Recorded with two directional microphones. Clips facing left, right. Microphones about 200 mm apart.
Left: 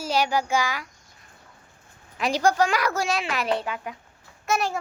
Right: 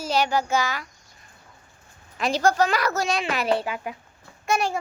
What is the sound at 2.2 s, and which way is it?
A child's voice, 15° left (ahead or behind).